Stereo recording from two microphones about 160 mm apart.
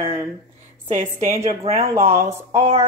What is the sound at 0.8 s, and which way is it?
Speech, 55° right (ahead or behind).